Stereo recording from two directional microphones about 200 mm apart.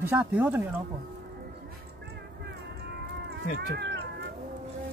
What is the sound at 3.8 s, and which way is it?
Cat, 55° right (ahead or behind).